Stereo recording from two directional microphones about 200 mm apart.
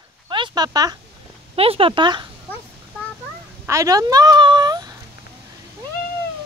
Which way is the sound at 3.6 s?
15° right (ahead or behind).